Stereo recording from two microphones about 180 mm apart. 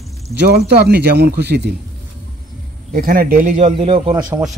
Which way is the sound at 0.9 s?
65° right (ahead or behind).